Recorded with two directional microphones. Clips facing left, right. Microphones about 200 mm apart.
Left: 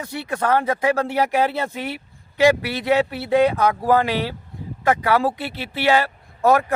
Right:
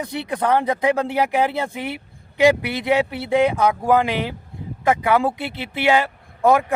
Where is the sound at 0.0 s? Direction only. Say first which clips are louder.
Right 1 dB; 15° right (ahead or behind).